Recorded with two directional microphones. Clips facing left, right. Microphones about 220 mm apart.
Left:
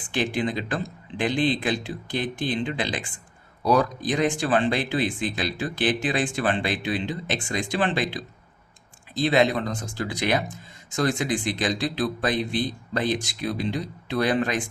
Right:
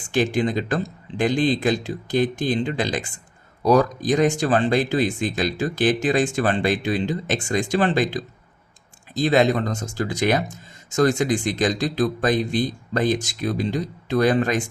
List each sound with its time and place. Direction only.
0.1 s speech: 45° right (ahead or behind)